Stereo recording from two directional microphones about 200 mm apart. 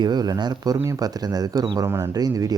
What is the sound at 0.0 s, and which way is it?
Speech, 20° right (ahead or behind).